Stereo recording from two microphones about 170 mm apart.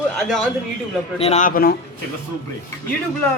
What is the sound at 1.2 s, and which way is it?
Speech, 35° left (ahead or behind).